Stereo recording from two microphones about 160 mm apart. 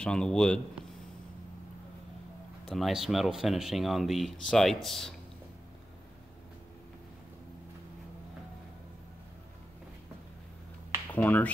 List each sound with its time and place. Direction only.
0.0 s speech: 5° left (ahead or behind)
2.6 s speech: centre (ahead or behind)
11.1 s speech: 10° left (ahead or behind)